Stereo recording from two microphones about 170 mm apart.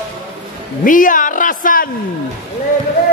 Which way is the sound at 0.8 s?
50° left (ahead or behind).